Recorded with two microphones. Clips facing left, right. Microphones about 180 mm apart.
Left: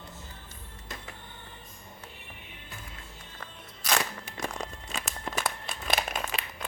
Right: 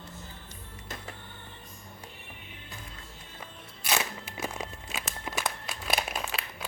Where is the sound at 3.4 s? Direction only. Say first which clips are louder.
Left 2 dB; 5° right (ahead or behind).